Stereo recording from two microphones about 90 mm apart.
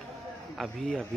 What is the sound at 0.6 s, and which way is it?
Speech, centre (ahead or behind).